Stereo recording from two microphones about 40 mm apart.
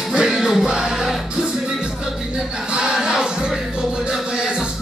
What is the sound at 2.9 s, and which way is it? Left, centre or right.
Music, centre.